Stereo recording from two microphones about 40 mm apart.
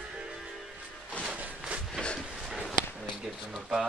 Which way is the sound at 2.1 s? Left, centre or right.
Centre.